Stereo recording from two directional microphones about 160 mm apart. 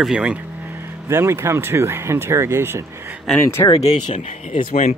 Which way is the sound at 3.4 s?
15° left (ahead or behind).